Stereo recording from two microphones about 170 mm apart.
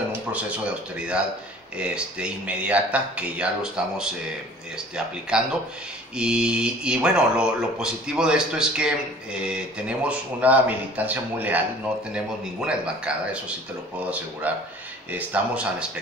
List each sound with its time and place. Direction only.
0.3 s speech: 5° right (ahead or behind)